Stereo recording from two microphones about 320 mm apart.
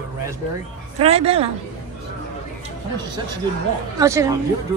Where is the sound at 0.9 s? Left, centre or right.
Centre.